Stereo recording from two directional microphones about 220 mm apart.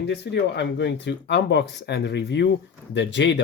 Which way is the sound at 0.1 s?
50° left (ahead or behind).